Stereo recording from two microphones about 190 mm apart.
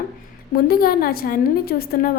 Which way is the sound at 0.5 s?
50° left (ahead or behind).